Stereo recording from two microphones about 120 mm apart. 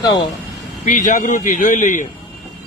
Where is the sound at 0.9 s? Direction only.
90° left.